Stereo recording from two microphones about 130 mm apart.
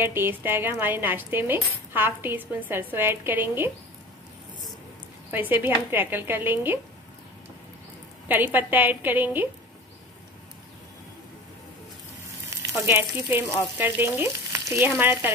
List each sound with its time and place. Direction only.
0.0 s speech: 15° right (ahead or behind)
5.3 s speech: 15° right (ahead or behind)
8.3 s speech: 15° right (ahead or behind)
12.4 s frying: 20° right (ahead or behind)
13.7 s speech: 15° right (ahead or behind)